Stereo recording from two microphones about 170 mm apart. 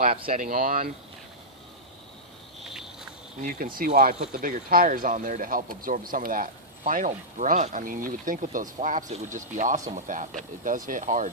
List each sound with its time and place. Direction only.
0.3 s speech: 50° right (ahead or behind)
2.6 s insect: centre (ahead or behind)
3.8 s speech: 60° right (ahead or behind)